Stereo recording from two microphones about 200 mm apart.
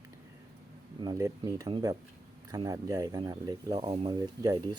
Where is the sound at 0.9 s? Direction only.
20° right (ahead or behind).